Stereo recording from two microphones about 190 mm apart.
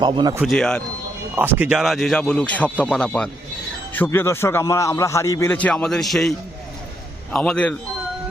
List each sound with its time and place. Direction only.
0.0 s speech: 25° right (ahead or behind)
0.3 s speech: centre (ahead or behind)
1.4 s a man's voice: 10° right (ahead or behind)